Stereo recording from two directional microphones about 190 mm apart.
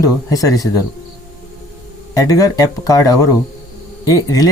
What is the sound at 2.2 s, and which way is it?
Speech, 20° left (ahead or behind).